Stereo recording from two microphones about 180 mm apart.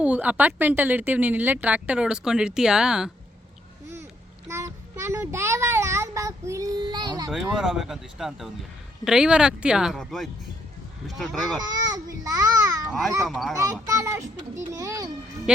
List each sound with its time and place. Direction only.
0.0 s speech: 10° right (ahead or behind)
4.4 s child singing: 15° right (ahead or behind)
7.3 s speech: centre (ahead or behind)
11.7 s a child's voice: 20° right (ahead or behind)
13.2 s speech: centre (ahead or behind)
13.8 s speech: 15° right (ahead or behind)
15.5 s speech: 5° right (ahead or behind)